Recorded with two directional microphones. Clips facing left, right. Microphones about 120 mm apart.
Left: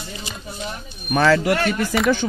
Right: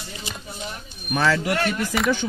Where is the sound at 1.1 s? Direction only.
70° left (ahead or behind).